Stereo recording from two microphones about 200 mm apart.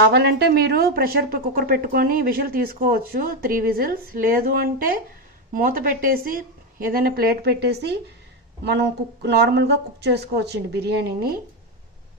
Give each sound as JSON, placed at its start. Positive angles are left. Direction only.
{"t": 0.0, "sound": "a woman's voice", "side_deg": -55}
{"t": 9.2, "sound": "speech", "side_deg": -55}